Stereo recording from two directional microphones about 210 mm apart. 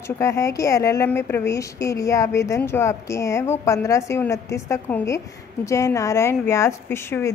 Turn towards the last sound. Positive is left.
turn(degrees=10)  # may be behind; listen again after turning